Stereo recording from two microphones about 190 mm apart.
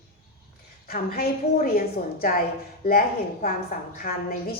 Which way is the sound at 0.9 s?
50° left (ahead or behind).